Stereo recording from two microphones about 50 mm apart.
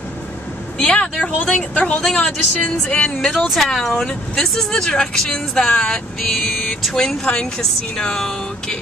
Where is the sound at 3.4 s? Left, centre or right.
Centre.